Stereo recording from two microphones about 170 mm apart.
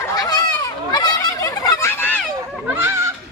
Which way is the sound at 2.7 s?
15° right (ahead or behind).